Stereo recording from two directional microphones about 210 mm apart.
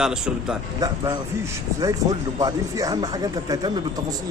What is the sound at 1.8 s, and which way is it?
Speech, 15° right (ahead or behind).